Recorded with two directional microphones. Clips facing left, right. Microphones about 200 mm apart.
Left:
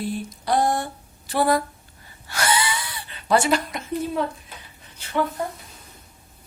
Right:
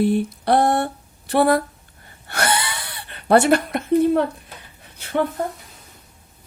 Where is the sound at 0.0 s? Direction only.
60° right (ahead or behind).